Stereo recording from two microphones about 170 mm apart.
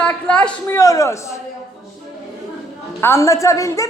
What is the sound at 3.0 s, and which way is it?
Speech, 15° left (ahead or behind).